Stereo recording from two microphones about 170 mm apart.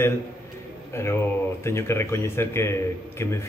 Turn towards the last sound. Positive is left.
turn(degrees=15)  # may be behind; listen again after turning